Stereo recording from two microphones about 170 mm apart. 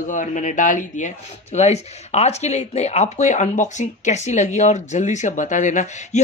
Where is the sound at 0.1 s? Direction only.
50° left (ahead or behind).